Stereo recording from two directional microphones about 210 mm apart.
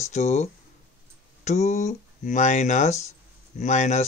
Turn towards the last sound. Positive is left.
turn(degrees=35)  # may be behind; listen again after turning